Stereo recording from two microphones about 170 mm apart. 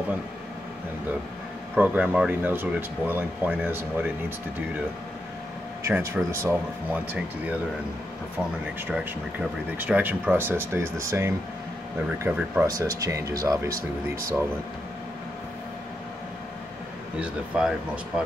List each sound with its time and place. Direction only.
1.8 s speech: 10° right (ahead or behind)
5.9 s speech: 15° right (ahead or behind)
8.8 s speech: 10° right (ahead or behind)
12.6 s speech: 20° right (ahead or behind)
13.7 s speech: 55° right (ahead or behind)
17.2 s speech: 5° right (ahead or behind)